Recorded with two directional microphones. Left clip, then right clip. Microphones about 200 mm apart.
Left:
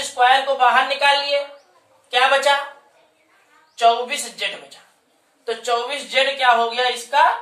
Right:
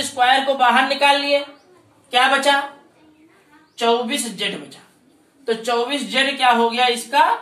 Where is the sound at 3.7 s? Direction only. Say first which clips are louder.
Left 2 dB; 20° left (ahead or behind).